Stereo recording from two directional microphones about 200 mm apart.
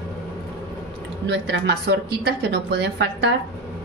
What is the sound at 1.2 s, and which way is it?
A woman's voice, 60° right (ahead or behind).